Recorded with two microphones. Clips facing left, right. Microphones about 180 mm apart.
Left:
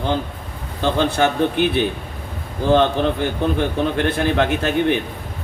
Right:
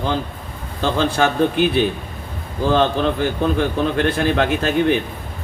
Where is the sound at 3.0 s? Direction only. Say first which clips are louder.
Right 1 dB; 50° right (ahead or behind).